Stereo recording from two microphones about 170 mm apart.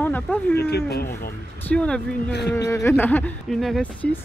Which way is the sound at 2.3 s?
80° left.